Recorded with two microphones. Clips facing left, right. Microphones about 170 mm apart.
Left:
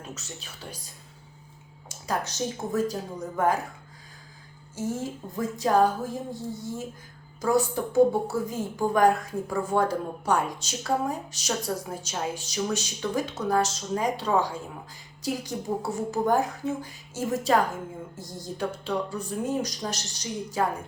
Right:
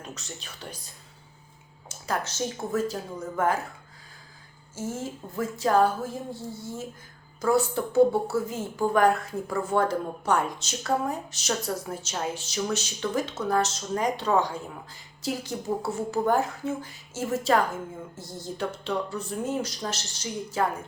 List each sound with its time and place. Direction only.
0.0 s speech: 5° left (ahead or behind)
1.9 s a woman's voice: 10° left (ahead or behind)
4.7 s a woman's voice: 15° left (ahead or behind)